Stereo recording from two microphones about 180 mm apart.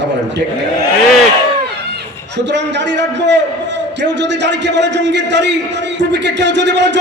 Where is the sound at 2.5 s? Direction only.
75° right (ahead or behind).